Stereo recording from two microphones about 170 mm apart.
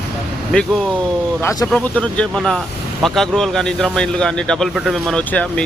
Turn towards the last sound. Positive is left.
turn(degrees=10)  # may be behind; listen again after turning